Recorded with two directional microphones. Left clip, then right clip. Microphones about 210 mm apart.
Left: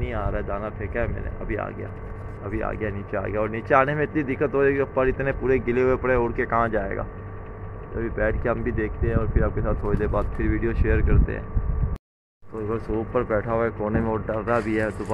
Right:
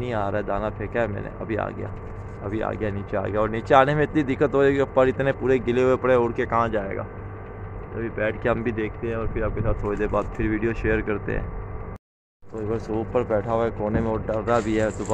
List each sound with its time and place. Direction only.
0.0 s speech: 25° right (ahead or behind)
2.4 s speech: 15° right (ahead or behind)
12.9 s speech: 5° right (ahead or behind)